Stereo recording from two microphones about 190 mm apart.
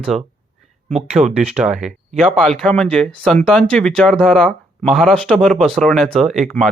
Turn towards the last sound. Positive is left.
turn(degrees=0)  # may be behind; listen again after turning